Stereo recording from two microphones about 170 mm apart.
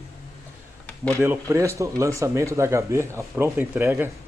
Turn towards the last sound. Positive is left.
turn(degrees=-15)  # may be behind; listen again after turning